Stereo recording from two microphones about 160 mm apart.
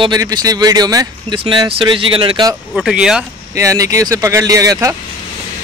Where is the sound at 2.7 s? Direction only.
5° right (ahead or behind).